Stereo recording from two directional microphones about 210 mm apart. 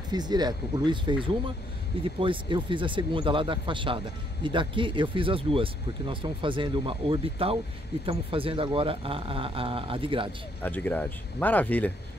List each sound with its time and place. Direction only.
0.1 s speech: 20° right (ahead or behind)
10.6 s speech: 10° left (ahead or behind)